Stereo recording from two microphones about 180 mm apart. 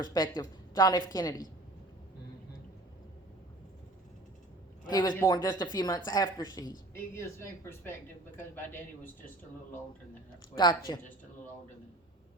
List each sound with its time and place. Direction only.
0.0 s a woman's voice: 25° left (ahead or behind)
4.9 s a woman's voice: 20° left (ahead or behind)
10.6 s a woman's voice: 25° left (ahead or behind)